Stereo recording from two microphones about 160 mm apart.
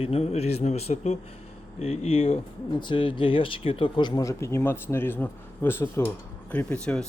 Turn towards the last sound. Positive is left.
turn(degrees=5)  # may be behind; listen again after turning